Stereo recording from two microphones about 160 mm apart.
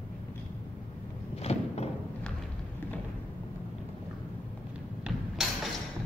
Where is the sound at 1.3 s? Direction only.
40° left (ahead or behind).